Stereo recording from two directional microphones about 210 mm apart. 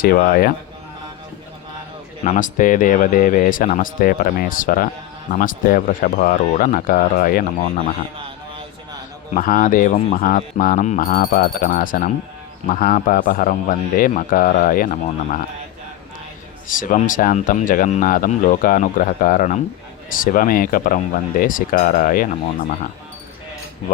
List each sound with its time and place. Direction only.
0.0 s speech: 45° left (ahead or behind)
2.2 s speech: 35° left (ahead or behind)
9.3 s speech: 40° left (ahead or behind)
16.6 s speech: 40° left (ahead or behind)